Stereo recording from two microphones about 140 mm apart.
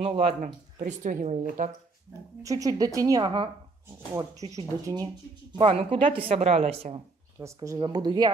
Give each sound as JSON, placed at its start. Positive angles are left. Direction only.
{"t": 0.0, "sound": "a woman's voice", "side_deg": -45}
{"t": 0.4, "sound": "speech", "side_deg": -65}
{"t": 2.4, "sound": "a woman's voice", "side_deg": -25}
{"t": 5.0, "sound": "a woman's voice", "side_deg": -40}
{"t": 7.3, "sound": "a woman's voice", "side_deg": -20}